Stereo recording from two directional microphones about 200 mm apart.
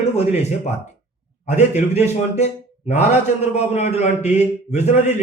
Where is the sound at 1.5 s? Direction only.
35° left (ahead or behind).